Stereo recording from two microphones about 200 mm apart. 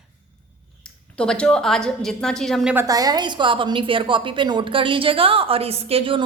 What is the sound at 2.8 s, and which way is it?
A woman's voice, 20° right (ahead or behind).